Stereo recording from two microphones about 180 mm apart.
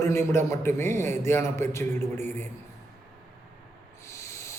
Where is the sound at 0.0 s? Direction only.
15° left (ahead or behind).